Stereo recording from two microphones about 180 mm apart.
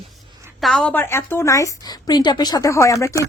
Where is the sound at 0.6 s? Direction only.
5° left (ahead or behind).